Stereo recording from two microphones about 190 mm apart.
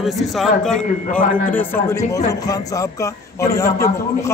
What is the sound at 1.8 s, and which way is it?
A man's voice, 15° left (ahead or behind).